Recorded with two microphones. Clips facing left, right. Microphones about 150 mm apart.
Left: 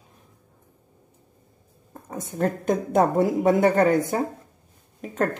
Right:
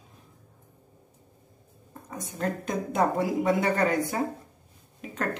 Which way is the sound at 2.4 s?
50° left (ahead or behind).